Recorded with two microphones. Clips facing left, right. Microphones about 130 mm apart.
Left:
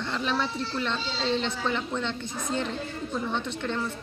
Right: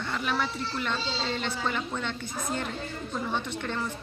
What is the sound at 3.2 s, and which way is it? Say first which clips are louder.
Speech: even; 10° right (ahead or behind).